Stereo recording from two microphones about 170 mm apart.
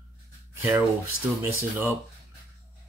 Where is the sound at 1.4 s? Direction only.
15° right (ahead or behind).